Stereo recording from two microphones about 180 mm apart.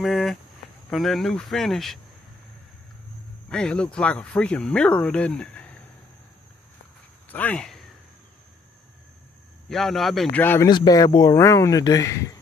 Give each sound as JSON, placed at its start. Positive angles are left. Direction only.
{"t": 0.0, "sound": "speech", "side_deg": 0}
{"t": 3.4, "sound": "speech", "side_deg": 5}
{"t": 7.2, "sound": "speech", "side_deg": 10}
{"t": 9.7, "sound": "speech", "side_deg": 0}
{"t": 10.4, "sound": "speech", "side_deg": 10}
{"t": 10.7, "sound": "speech", "side_deg": 25}